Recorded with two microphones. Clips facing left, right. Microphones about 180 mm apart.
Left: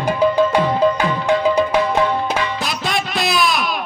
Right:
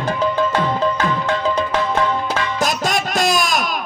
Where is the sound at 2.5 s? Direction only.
45° right (ahead or behind).